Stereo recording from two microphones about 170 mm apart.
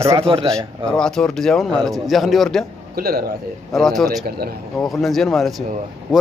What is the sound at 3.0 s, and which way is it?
Speech, 65° right (ahead or behind).